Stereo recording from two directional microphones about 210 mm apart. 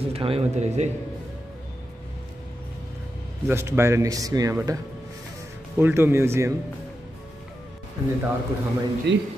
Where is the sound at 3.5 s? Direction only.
10° right (ahead or behind).